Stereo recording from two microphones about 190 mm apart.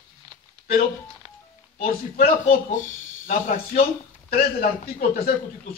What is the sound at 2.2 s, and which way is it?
Speech, 40° left (ahead or behind).